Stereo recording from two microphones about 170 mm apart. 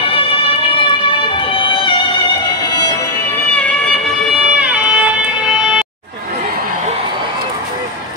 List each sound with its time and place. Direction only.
0.0 s run: 30° left (ahead or behind)
1.5 s music: 30° left (ahead or behind)
4.3 s vehicle: 5° right (ahead or behind)